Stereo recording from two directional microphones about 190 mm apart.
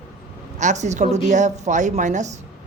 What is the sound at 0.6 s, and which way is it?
A woman's voice, 40° right (ahead or behind).